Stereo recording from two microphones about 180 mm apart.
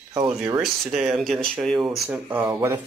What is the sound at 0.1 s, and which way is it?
Speech, 20° right (ahead or behind).